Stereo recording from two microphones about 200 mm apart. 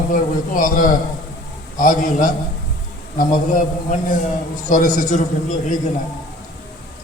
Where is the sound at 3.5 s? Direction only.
40° left (ahead or behind).